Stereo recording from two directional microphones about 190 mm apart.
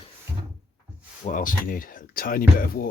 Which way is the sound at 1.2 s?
45° left (ahead or behind).